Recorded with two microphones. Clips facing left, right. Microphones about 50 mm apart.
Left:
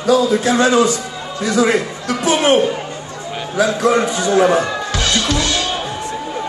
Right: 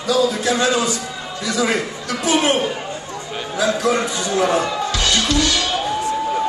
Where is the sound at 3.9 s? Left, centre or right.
Left.